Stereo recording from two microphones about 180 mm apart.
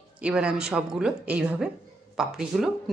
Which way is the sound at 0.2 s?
5° right (ahead or behind).